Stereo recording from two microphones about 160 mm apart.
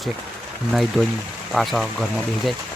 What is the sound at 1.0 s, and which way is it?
Speech, 15° left (ahead or behind).